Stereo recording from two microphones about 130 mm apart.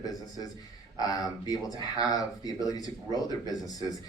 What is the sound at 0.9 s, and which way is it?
Speech, 30° left (ahead or behind).